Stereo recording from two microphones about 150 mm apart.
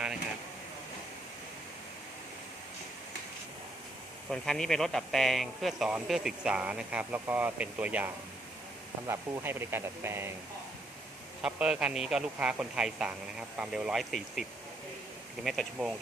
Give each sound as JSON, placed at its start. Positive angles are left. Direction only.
{"t": 4.3, "sound": "speech", "side_deg": 5}
{"t": 11.4, "sound": "speech", "side_deg": -5}
{"t": 15.4, "sound": "speech", "side_deg": 0}